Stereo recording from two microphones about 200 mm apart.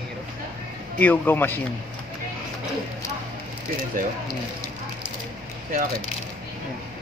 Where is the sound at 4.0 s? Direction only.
45° right (ahead or behind).